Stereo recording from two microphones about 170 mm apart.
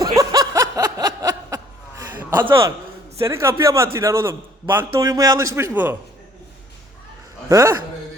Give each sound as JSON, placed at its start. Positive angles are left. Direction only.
{"t": 0.2, "sound": "snicker", "side_deg": -20}
{"t": 3.2, "sound": "a man's voice", "side_deg": -15}
{"t": 7.4, "sound": "a man's voice", "side_deg": -15}